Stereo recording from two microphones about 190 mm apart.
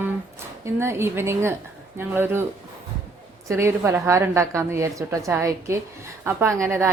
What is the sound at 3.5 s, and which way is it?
A woman's voice, 15° right (ahead or behind).